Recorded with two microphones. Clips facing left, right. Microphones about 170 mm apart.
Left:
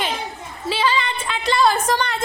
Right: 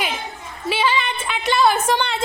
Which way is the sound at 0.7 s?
20° right (ahead or behind).